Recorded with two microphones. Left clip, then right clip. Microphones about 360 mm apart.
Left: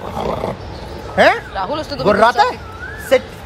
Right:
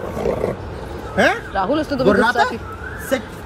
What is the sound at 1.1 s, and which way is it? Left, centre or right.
Speech, left.